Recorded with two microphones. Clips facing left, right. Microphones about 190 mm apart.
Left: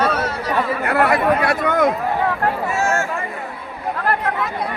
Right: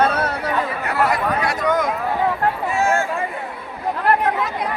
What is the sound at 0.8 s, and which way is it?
Speech, 60° left (ahead or behind).